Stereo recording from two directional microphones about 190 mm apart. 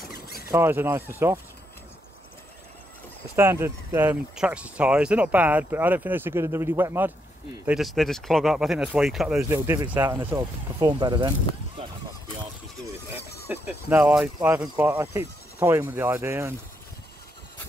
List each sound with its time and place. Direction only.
0.1 s a sound: 50° left (ahead or behind)
0.5 s speech: 15° right (ahead or behind)
3.3 s speech: 15° right (ahead or behind)
7.6 s speech: centre (ahead or behind); by 11.3 s 25° right (ahead or behind)
13.1 s speech: 10° right (ahead or behind)